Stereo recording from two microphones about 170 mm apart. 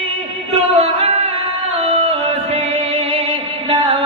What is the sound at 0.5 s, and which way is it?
Music, 35° right (ahead or behind).